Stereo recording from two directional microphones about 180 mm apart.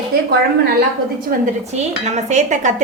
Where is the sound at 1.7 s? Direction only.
40° right (ahead or behind).